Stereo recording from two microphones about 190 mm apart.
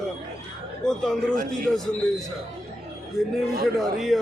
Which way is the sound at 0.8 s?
5° left (ahead or behind).